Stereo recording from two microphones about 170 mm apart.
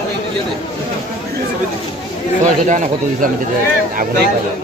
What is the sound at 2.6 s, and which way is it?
Speech, 45° right (ahead or behind).